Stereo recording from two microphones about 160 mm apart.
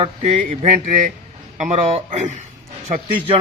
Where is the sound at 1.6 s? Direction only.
40° right (ahead or behind).